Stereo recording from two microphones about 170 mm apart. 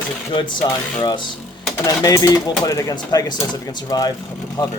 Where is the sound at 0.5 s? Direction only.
25° left (ahead or behind).